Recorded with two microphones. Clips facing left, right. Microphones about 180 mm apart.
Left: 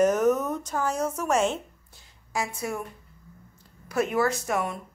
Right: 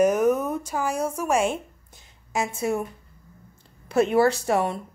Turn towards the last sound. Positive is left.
turn(degrees=-30)  # may be behind; listen again after turning